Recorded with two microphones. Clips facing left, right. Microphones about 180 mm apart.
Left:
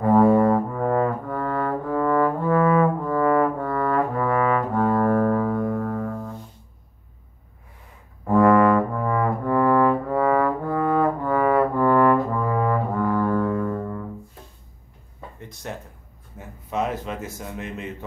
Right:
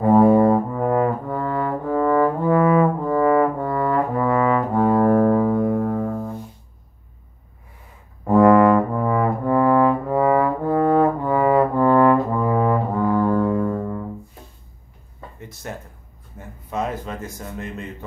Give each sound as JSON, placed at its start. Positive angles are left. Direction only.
{"t": 0.0, "sound": "brass instrument", "side_deg": -25}
{"t": 8.3, "sound": "brass instrument", "side_deg": -25}
{"t": 15.3, "sound": "a sound", "side_deg": -5}